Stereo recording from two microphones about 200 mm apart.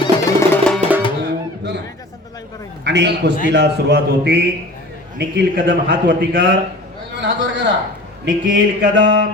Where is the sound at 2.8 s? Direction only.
55° right (ahead or behind).